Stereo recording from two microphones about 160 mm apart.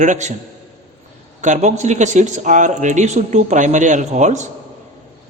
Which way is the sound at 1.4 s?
50° right (ahead or behind).